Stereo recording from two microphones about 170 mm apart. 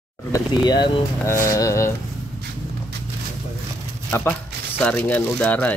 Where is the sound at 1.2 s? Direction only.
15° left (ahead or behind).